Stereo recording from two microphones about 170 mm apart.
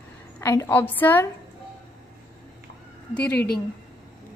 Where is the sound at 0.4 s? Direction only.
15° left (ahead or behind).